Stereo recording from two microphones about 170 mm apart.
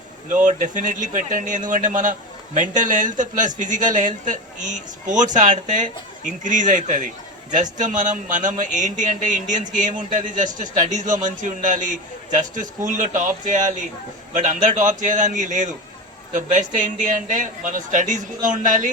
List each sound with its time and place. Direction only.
0.4 s a man's voice: 50° right (ahead or behind)